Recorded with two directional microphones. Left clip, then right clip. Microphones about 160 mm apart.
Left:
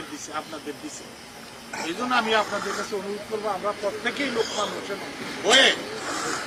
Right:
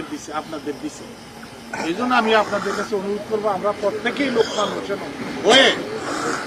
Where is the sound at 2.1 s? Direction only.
10° right (ahead or behind).